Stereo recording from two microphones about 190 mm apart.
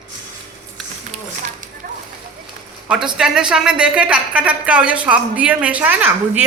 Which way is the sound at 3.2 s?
5° right (ahead or behind).